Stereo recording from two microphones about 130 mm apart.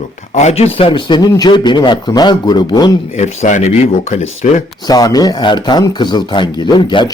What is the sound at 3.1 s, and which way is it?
Speech, 65° left (ahead or behind).